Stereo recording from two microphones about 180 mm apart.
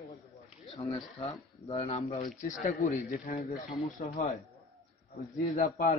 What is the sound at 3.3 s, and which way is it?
Speech, 35° left (ahead or behind).